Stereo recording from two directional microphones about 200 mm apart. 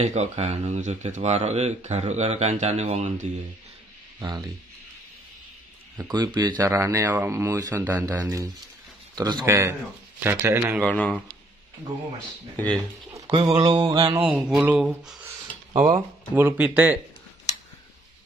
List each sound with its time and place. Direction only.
0.0 s speech: 35° right (ahead or behind)
6.0 s mantra: 20° right (ahead or behind)
6.6 s speech: 10° right (ahead or behind)
10.9 s speech: 5° left (ahead or behind)
12.5 s speech: 5° left (ahead or behind)
13.4 s mantra: 30° right (ahead or behind)
14.2 s speech: 5° right (ahead or behind)